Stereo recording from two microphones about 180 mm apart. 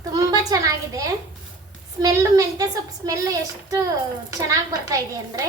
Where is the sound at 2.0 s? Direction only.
15° right (ahead or behind).